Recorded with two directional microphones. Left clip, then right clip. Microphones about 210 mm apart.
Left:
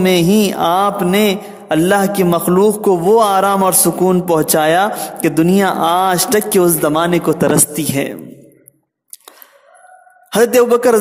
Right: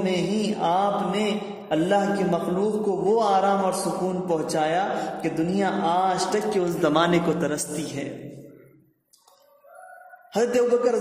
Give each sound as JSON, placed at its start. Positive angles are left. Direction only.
{"t": 0.0, "sound": "speech", "side_deg": 50}
{"t": 10.3, "sound": "speech", "side_deg": 50}